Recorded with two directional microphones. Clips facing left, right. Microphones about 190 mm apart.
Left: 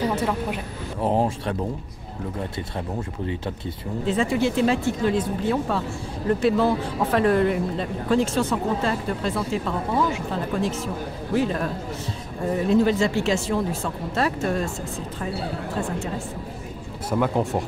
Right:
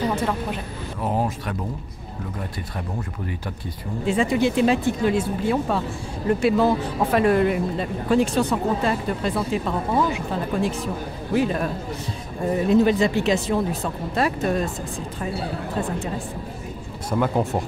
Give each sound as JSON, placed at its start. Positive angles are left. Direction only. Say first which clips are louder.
{"t": 0.0, "sound": "a woman's voice", "louder": "even", "side_deg": 10}
{"t": 1.0, "sound": "speech", "louder": "left 3 dB", "side_deg": 30}
{"t": 4.0, "sound": "speech", "louder": "right 2 dB", "side_deg": -15}
{"t": 17.2, "sound": "speech", "louder": "right 1 dB", "side_deg": 0}